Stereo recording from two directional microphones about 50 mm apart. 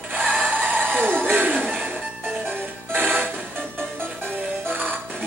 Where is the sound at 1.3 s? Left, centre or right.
Right.